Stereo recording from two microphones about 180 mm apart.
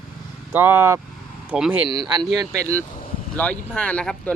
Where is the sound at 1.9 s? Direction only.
25° right (ahead or behind).